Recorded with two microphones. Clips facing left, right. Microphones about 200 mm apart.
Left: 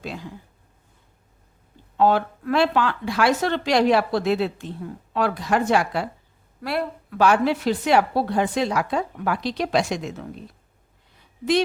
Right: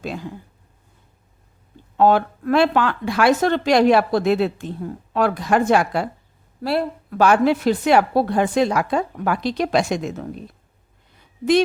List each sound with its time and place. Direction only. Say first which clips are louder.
0.0 s speech: right 4 dB; 50° right (ahead or behind)
2.0 s speech: right 3 dB; 50° right (ahead or behind)
6.6 s speech: right 4 dB; 30° right (ahead or behind)
7.2 s speech: right 3 dB; 50° right (ahead or behind)